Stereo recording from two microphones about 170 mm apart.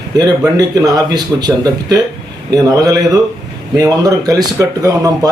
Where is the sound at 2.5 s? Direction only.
20° right (ahead or behind).